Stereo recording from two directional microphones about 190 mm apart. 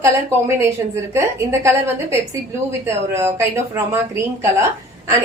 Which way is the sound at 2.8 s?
15° right (ahead or behind).